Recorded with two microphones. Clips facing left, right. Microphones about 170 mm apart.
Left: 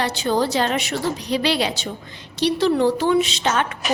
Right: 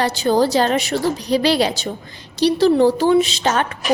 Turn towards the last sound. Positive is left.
turn(degrees=-40)  # may be behind; listen again after turning